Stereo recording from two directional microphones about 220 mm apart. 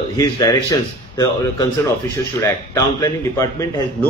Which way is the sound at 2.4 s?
15° left (ahead or behind).